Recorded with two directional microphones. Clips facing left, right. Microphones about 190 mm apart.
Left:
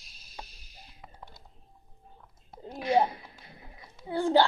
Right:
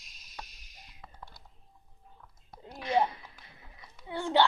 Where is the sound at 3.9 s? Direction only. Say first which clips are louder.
Left 4 dB; 35° left (ahead or behind).